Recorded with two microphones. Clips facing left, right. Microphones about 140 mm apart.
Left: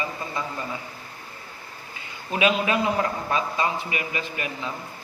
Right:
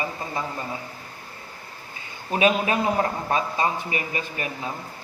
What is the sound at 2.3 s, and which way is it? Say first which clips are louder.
A man's voice: right 1 dB; 35° right (ahead or behind).